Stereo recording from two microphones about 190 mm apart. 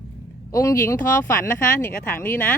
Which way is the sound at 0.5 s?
15° left (ahead or behind).